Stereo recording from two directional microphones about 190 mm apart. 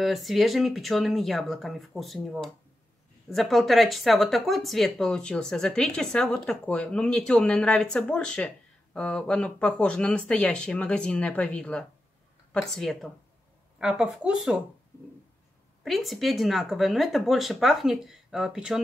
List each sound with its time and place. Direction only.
0.0 s speech: centre (ahead or behind)
15.8 s speech: centre (ahead or behind)